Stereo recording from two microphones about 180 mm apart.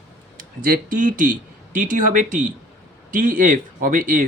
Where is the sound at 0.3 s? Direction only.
50° right (ahead or behind).